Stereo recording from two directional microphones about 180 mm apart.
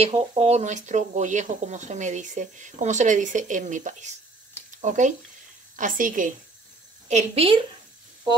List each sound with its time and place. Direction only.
0.0 s speech: 35° right (ahead or behind)
4.6 s a sound: 45° right (ahead or behind)
5.8 s a woman's voice: 45° right (ahead or behind)
7.1 s speech: 35° right (ahead or behind)